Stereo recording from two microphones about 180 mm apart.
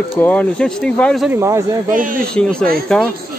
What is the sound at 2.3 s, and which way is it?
Speech, 5° left (ahead or behind).